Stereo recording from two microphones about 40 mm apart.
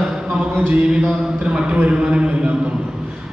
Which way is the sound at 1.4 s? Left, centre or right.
Right.